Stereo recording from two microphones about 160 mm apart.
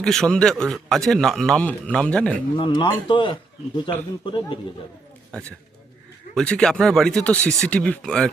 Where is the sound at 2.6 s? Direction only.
30° left (ahead or behind).